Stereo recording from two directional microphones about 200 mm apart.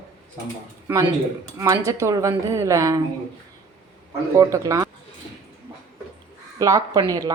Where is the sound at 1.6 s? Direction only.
15° right (ahead or behind).